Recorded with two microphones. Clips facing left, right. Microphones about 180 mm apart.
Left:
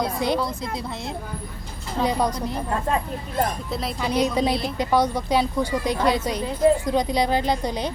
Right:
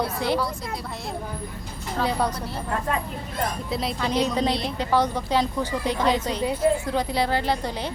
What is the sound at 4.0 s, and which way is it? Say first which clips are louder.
A woman's voice: left 2 dB; 10° left (ahead or behind).